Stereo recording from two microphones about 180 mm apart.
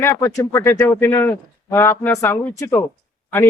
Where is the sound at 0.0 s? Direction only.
10° left (ahead or behind).